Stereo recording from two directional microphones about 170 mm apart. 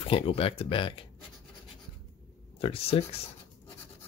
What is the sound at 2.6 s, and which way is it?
Speech, 35° left (ahead or behind).